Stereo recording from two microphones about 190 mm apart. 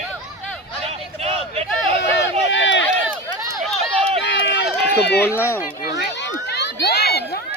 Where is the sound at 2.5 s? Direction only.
70° left (ahead or behind).